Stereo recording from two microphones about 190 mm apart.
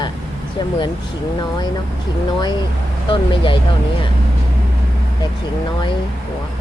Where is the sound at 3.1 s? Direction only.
25° left (ahead or behind).